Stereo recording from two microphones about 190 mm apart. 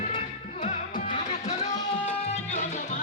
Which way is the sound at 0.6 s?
35° left (ahead or behind).